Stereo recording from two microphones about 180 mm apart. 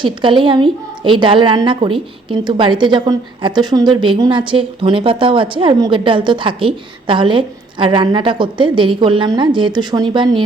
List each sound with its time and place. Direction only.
0.0 s a woman's voice: 25° right (ahead or behind)